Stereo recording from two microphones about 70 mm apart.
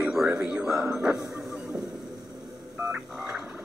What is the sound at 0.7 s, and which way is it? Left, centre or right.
Speech, centre.